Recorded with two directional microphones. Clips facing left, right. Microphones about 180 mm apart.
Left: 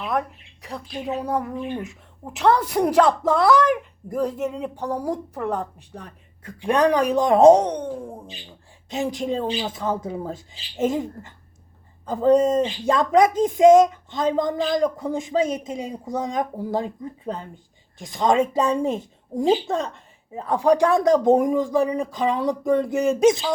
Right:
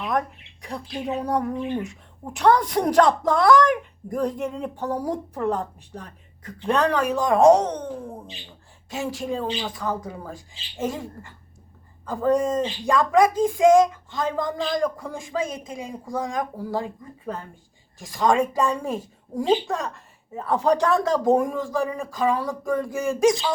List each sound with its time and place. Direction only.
0.9 s speech: centre (ahead or behind); by 23.5 s 20° left (ahead or behind)